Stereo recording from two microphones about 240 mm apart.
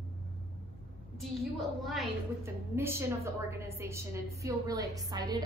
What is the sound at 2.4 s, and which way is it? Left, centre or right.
A woman's voice, centre.